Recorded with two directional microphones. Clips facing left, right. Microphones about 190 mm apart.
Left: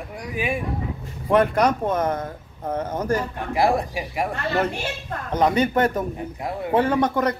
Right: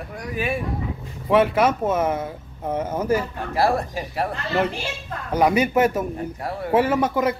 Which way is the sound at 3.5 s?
15° left (ahead or behind).